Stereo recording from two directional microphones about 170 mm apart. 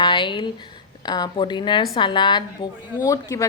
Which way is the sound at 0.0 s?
30° left (ahead or behind).